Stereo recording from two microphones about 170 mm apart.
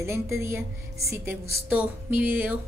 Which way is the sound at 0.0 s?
15° right (ahead or behind).